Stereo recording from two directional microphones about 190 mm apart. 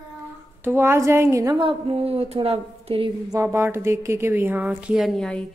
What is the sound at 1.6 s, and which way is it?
A woman's voice, 30° right (ahead or behind).